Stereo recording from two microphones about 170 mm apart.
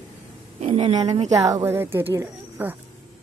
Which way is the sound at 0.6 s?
35° right (ahead or behind).